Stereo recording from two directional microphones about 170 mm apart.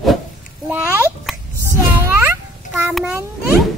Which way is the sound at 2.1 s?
15° right (ahead or behind).